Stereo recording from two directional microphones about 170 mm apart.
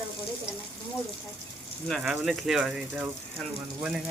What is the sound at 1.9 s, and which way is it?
Speech, centre (ahead or behind).